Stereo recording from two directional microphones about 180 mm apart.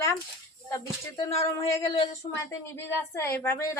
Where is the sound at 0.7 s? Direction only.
20° left (ahead or behind).